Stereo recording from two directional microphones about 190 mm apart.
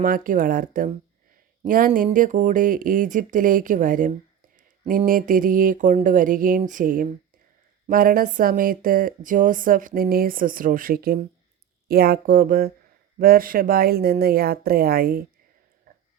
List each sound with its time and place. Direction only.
0.0 s speech: 45° right (ahead or behind)